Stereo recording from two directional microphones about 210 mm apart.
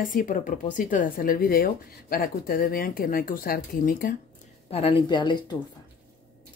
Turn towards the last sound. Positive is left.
turn(degrees=20)  # may be behind; listen again after turning